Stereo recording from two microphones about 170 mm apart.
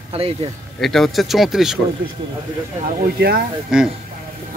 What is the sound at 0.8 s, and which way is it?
Speech, centre (ahead or behind).